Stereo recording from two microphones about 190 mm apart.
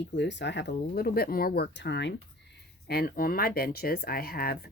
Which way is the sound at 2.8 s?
55° left (ahead or behind).